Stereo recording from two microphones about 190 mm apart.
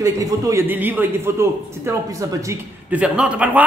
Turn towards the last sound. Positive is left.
turn(degrees=-10)  # may be behind; listen again after turning